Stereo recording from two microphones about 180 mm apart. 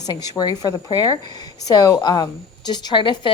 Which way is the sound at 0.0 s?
20° left (ahead or behind).